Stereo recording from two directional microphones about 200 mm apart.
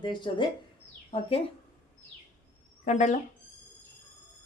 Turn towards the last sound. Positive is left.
turn(degrees=35)  # may be behind; listen again after turning